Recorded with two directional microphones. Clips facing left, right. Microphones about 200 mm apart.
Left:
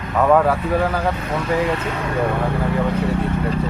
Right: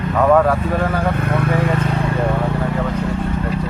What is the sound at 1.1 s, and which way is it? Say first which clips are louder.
Speech: right 2 dB; 60° right (ahead or behind).